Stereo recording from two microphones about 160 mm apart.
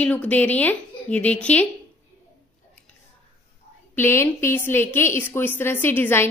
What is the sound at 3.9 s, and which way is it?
A woman's voice, 15° left (ahead or behind).